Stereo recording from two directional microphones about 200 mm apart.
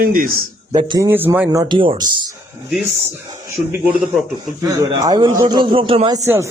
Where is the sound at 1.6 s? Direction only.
25° right (ahead or behind).